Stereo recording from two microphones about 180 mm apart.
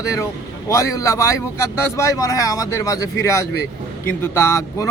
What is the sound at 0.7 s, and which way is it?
A man's voice, 15° left (ahead or behind).